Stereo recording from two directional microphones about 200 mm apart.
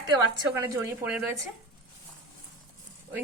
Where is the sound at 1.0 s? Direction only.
5° right (ahead or behind).